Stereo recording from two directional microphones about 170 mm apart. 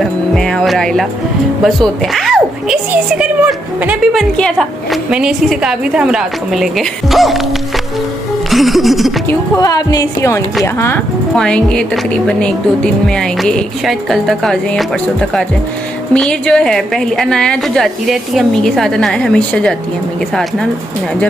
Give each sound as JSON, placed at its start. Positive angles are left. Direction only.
{"t": 0.0, "sound": "music", "side_deg": 5}
{"t": 1.6, "sound": "a woman's voice", "side_deg": 0}
{"t": 8.5, "sound": "a woman's voice", "side_deg": 0}
{"t": 9.3, "sound": "a woman's voice", "side_deg": 20}
{"t": 11.3, "sound": "a woman's voice", "side_deg": 5}
{"t": 16.1, "sound": "a woman's voice", "side_deg": 5}